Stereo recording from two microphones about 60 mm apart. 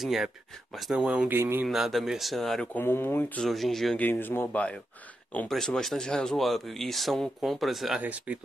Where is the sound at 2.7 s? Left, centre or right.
Left.